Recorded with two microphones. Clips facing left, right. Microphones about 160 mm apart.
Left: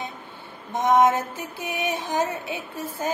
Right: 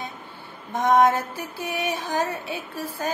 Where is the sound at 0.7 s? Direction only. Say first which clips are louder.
Even; 20° left (ahead or behind).